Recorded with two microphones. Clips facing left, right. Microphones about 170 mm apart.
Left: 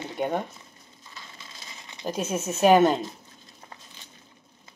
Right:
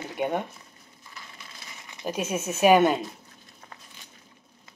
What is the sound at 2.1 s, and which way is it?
Speech, 10° right (ahead or behind).